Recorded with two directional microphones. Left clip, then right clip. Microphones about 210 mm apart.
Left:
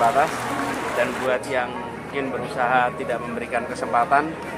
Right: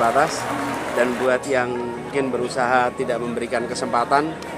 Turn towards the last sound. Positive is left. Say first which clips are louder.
# even
turn(degrees=-50)  # may be behind; listen again after turning